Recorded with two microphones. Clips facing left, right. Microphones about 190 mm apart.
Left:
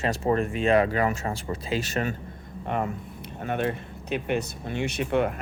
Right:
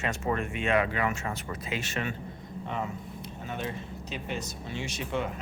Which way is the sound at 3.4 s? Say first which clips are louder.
Left 8 dB; 60° left (ahead or behind).